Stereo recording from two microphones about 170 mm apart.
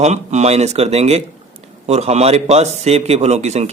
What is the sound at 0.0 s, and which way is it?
A man's voice, 40° right (ahead or behind).